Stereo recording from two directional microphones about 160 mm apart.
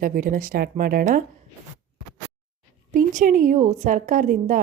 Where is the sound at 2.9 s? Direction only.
55° right (ahead or behind).